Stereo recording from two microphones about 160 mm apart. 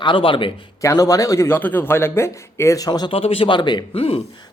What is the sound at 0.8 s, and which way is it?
Speech, 20° left (ahead or behind).